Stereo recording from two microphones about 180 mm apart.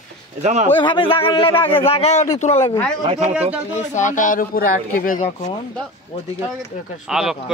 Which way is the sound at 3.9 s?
45° left (ahead or behind).